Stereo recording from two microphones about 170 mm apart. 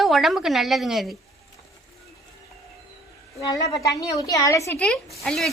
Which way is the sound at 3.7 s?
20° left (ahead or behind).